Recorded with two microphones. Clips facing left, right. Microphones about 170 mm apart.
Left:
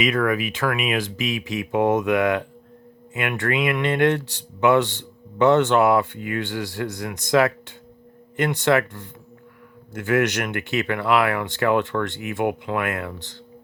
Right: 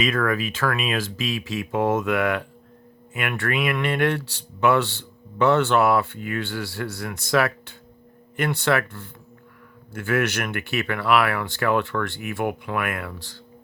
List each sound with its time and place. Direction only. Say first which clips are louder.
0.0 s speech: left 2 dB; 15° left (ahead or behind)